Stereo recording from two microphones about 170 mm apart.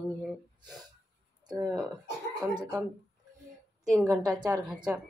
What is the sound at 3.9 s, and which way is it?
Speech, centre (ahead or behind).